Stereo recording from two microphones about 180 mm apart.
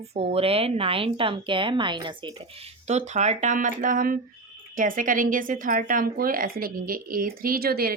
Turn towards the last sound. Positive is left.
turn(degrees=-55)  # may be behind; listen again after turning